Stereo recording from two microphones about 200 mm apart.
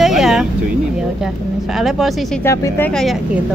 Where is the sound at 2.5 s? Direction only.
15° left (ahead or behind).